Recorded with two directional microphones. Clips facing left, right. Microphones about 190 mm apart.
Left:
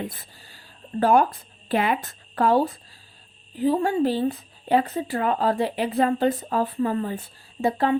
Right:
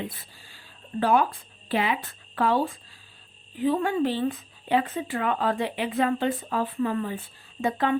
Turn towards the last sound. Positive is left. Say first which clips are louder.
# left 3 dB
turn(degrees=35)  # may be behind; listen again after turning